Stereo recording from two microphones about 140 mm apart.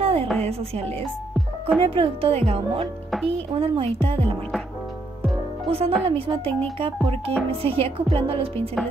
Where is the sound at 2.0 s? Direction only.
45° right (ahead or behind).